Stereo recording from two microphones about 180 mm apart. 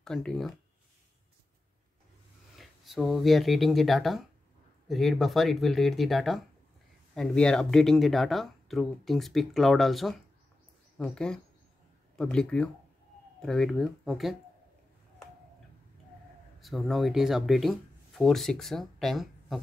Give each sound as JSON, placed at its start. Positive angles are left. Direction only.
{"t": 0.0, "sound": "speech", "side_deg": 5}
{"t": 2.5, "sound": "speech", "side_deg": 0}
{"t": 16.5, "sound": "speech", "side_deg": 0}